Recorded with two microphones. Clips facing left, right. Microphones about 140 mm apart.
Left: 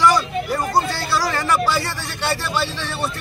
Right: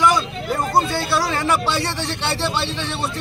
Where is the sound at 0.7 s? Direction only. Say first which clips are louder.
Right 2 dB; 25° right (ahead or behind).